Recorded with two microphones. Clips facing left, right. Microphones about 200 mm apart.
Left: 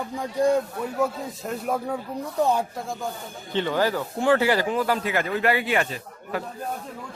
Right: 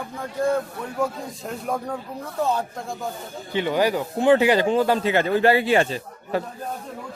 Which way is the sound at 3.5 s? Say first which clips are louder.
Right 2 dB; 15° right (ahead or behind).